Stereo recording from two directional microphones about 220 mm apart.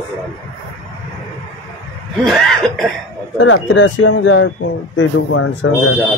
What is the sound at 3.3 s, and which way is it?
Speech, 60° left (ahead or behind).